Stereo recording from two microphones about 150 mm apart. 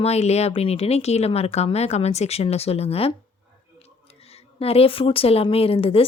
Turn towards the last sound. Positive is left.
turn(degrees=40)  # may be behind; listen again after turning